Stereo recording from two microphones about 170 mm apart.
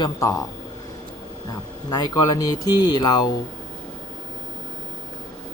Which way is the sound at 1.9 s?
20° left (ahead or behind).